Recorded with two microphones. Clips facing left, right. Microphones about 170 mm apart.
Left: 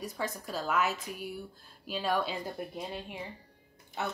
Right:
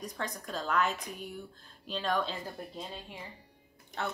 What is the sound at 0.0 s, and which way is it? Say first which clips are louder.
A woman's voice: left 2 dB; 5° left (ahead or behind).